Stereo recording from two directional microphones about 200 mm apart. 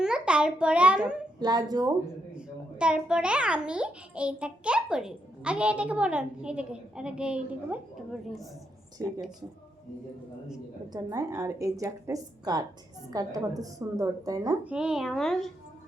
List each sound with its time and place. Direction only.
0.0 s a child's voice: 5° right (ahead or behind)
1.4 s speech: 20° right (ahead or behind)
2.3 s a child's voice: 5° right (ahead or behind)
10.9 s a woman's voice: 15° right (ahead or behind)
14.6 s a child's voice: 5° right (ahead or behind)